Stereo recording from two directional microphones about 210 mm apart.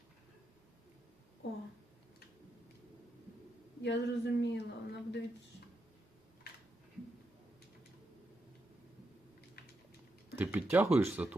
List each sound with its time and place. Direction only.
3.8 s a woman's voice: 55° left (ahead or behind)
10.3 s speech: 10° right (ahead or behind)